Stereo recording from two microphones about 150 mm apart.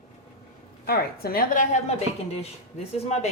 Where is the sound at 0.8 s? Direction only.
85° left; by 1.7 s 70° left (ahead or behind).